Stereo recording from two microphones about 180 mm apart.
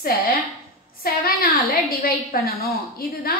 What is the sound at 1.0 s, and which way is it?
A woman's voice, 55° left (ahead or behind).